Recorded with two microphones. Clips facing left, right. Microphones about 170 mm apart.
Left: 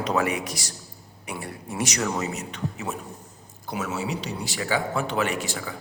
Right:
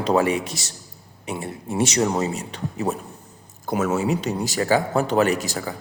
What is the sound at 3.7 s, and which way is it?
A man's voice, 50° right (ahead or behind).